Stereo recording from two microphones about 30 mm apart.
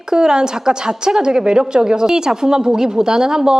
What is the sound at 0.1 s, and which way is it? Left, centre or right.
A woman's voice, right.